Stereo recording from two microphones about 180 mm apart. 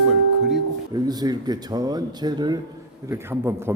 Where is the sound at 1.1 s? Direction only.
20° right (ahead or behind).